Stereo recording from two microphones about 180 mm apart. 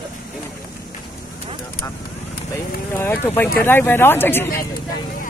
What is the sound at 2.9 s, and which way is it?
Speech, 15° left (ahead or behind).